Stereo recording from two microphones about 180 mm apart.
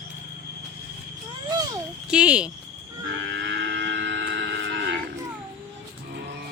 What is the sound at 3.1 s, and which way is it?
Livestock, 90° right.